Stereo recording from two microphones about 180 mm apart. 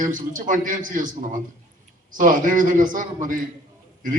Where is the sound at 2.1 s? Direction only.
45° right (ahead or behind).